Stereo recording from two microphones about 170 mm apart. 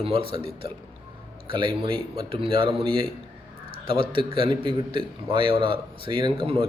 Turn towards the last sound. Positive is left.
turn(degrees=-30)  # may be behind; listen again after turning